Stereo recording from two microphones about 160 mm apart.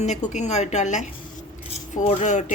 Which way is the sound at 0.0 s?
45° left (ahead or behind).